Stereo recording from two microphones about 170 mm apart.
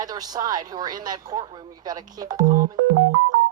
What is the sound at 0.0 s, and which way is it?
Speech, 20° right (ahead or behind).